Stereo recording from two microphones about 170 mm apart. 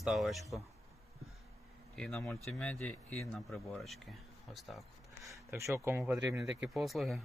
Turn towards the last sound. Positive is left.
turn(degrees=0)  # may be behind; listen again after turning